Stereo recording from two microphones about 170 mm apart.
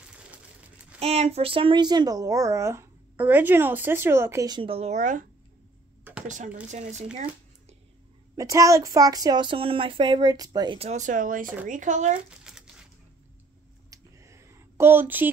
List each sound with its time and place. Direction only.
0.9 s speech: 40° right (ahead or behind)
6.2 s speech: 45° right (ahead or behind)
8.4 s speech: 20° right (ahead or behind)
10.8 s speech: 45° right (ahead or behind)
12.3 s a sound: 5° right (ahead or behind)
13.8 s a sound: 15° right (ahead or behind)